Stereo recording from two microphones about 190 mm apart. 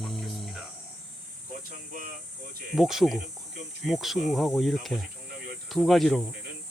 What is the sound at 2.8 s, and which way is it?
Speech, centre (ahead or behind).